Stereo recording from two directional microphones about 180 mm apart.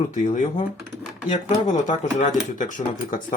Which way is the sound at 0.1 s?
40° left (ahead or behind).